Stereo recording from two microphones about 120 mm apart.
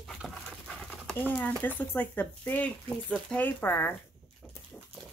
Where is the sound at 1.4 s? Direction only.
15° left (ahead or behind).